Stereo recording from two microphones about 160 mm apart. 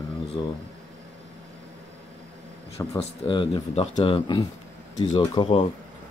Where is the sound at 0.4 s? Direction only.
25° left (ahead or behind).